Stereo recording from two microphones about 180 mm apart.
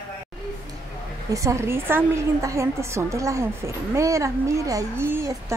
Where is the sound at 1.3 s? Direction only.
15° right (ahead or behind).